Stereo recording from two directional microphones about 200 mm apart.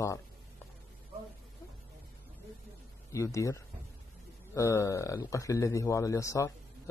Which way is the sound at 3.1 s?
15° left (ahead or behind).